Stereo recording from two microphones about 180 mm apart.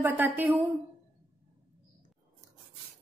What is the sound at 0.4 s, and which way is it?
Speech, 10° right (ahead or behind).